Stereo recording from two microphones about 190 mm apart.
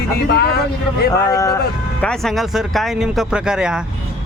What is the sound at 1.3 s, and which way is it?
Speech, 20° left (ahead or behind).